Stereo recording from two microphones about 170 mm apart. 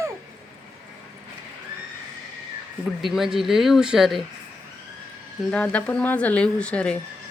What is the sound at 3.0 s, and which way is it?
Speech, centre (ahead or behind).